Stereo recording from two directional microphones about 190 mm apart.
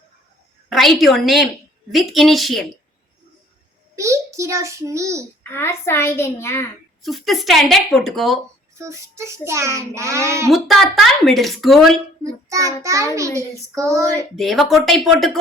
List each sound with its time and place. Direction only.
0.7 s a woman's voice: centre (ahead or behind)
3.9 s a child's voice: 15° right (ahead or behind)
5.4 s a child's voice: 10° left (ahead or behind)
7.0 s speech: centre (ahead or behind)
8.8 s a child's voice: 15° right (ahead or behind)
10.5 s speech: centre (ahead or behind)
12.2 s child singing: 15° right (ahead or behind)
12.8 s a child's voice: 15° right (ahead or behind)
14.3 s speech: centre (ahead or behind)